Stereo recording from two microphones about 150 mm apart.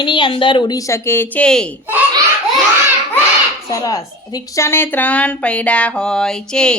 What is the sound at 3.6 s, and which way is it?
A woman's voice, 20° left (ahead or behind).